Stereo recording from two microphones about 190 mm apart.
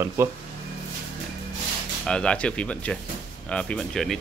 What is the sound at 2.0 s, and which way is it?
Speech, 5° left (ahead or behind).